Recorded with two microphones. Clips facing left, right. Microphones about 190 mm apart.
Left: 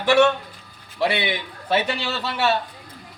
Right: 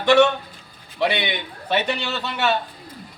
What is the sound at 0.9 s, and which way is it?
A man's voice, centre (ahead or behind).